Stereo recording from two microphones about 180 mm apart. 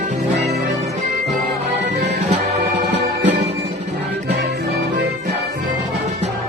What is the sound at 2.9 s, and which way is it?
Music, 75° right (ahead or behind).